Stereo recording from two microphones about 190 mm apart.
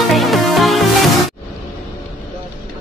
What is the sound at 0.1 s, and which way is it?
Music, centre (ahead or behind).